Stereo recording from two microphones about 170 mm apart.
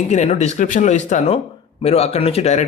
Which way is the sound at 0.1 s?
40° left (ahead or behind).